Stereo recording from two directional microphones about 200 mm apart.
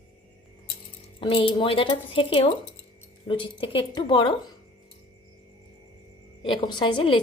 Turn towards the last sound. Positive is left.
turn(degrees=25)  # may be behind; listen again after turning